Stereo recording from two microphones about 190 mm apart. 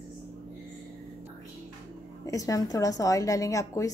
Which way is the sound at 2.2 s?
20° left (ahead or behind).